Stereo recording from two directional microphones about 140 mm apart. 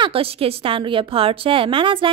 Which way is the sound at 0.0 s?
40° right (ahead or behind).